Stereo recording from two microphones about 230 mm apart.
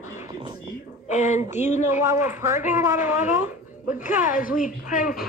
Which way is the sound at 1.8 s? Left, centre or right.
Centre.